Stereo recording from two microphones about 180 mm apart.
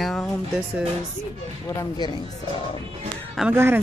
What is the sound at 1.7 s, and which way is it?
Speech, 20° left (ahead or behind).